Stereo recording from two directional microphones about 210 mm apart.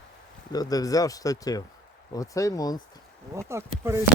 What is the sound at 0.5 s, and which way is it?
Speech, 20° left (ahead or behind).